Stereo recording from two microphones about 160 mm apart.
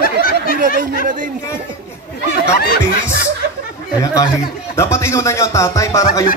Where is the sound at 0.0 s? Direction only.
65° left (ahead or behind).